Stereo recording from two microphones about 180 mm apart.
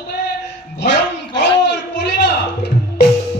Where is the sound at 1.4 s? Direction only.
75° left (ahead or behind).